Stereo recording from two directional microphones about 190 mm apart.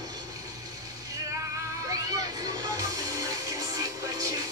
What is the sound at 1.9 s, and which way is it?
Music, 20° right (ahead or behind).